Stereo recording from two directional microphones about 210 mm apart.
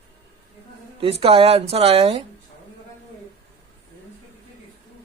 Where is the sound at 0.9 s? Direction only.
25° right (ahead or behind).